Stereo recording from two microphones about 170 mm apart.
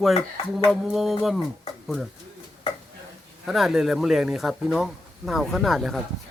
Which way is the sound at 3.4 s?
Centre (ahead or behind).